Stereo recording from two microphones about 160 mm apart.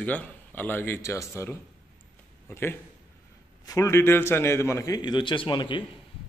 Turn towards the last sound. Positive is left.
turn(degrees=30)  # may be behind; listen again after turning